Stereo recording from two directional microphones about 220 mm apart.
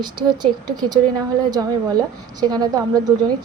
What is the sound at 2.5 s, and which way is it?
Speech, 20° right (ahead or behind).